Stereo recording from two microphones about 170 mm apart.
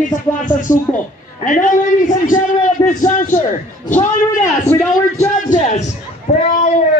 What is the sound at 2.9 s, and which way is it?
Speech, 50° left (ahead or behind).